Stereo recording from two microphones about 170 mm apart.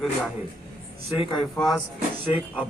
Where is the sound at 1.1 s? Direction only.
25° left (ahead or behind).